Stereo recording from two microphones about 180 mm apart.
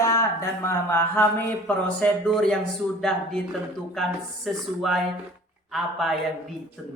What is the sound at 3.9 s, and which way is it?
Speech, centre (ahead or behind).